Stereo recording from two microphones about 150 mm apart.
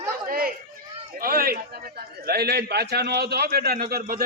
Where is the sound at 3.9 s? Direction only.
75° right (ahead or behind).